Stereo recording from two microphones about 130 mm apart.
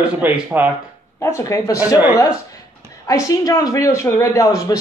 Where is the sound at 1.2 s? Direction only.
20° left (ahead or behind).